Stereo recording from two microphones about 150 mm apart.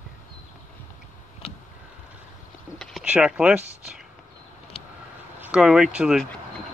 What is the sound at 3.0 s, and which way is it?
Speech, 5° right (ahead or behind).